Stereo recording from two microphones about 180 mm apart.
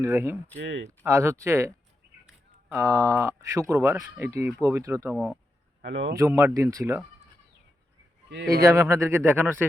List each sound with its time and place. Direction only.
0.0 s speech: 15° right (ahead or behind)
0.6 s speech: 90° right
0.9 s speech: 15° right (ahead or behind)
5.1 s speech: centre (ahead or behind)
5.8 s speech: 80° right
6.1 s speech: 15° right (ahead or behind)
8.4 s speech: 15° right (ahead or behind)